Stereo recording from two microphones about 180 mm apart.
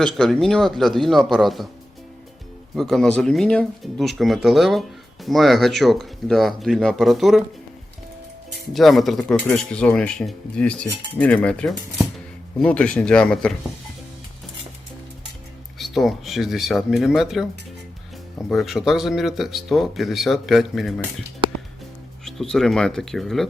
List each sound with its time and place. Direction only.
0.0 s speech: centre (ahead or behind)
2.7 s speech: 5° left (ahead or behind)
8.7 s speech: centre (ahead or behind)
15.8 s speech: centre (ahead or behind)
18.4 s speech: centre (ahead or behind)
22.2 s speech: centre (ahead or behind)